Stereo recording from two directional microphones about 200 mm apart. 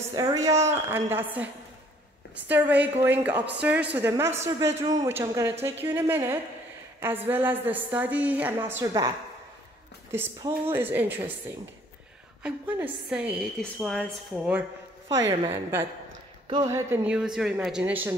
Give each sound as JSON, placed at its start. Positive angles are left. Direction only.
{"t": 0.1, "sound": "a woman's voice", "side_deg": -15}
{"t": 10.1, "sound": "a woman's voice", "side_deg": -10}
{"t": 12.4, "sound": "a woman's voice", "side_deg": -10}
{"t": 15.0, "sound": "a woman's voice", "side_deg": -15}
{"t": 16.4, "sound": "a woman's voice", "side_deg": -20}